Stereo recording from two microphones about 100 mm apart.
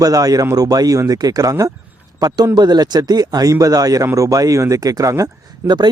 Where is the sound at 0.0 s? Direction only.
40° right (ahead or behind).